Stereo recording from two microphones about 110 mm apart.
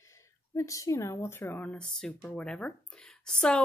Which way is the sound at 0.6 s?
30° left (ahead or behind).